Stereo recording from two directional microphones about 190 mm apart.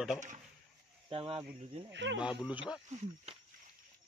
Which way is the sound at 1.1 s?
30° right (ahead or behind).